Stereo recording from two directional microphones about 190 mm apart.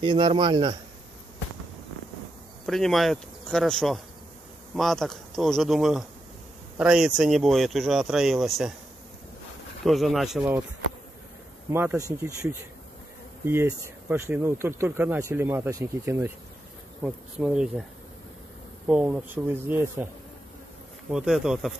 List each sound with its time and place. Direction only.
0.0 s a man's voice: 25° right (ahead or behind)
2.6 s speech: centre (ahead or behind)
9.8 s speech: centre (ahead or behind)
11.7 s speech: 10° right (ahead or behind)
18.9 s speech: 5° right (ahead or behind)
21.1 s speech: 5° right (ahead or behind)